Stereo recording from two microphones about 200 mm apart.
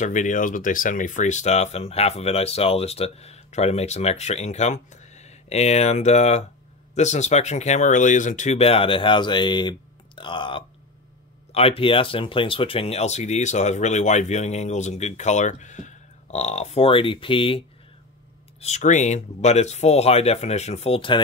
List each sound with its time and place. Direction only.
0.0 s speech: 40° left (ahead or behind)